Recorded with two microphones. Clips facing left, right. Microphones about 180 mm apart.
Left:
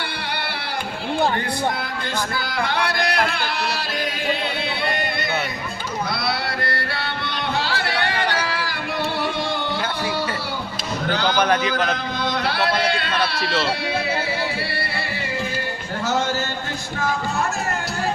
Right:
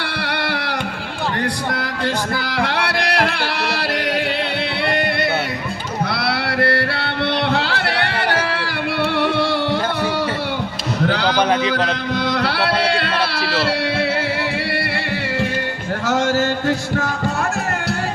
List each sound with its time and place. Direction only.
2.6 s music: 75° right (ahead or behind)
6.1 s music: 75° right (ahead or behind)
11.1 s a sound: 75° right (ahead or behind)
11.3 s speech: 30° right (ahead or behind)
12.2 s speech: 75° right (ahead or behind)
16.0 s speech: 90° right